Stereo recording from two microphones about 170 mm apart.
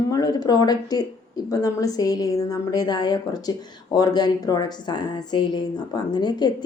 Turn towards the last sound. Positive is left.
turn(degrees=25)  # may be behind; listen again after turning